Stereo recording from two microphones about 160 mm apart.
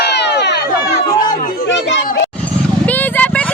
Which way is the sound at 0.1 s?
90° left.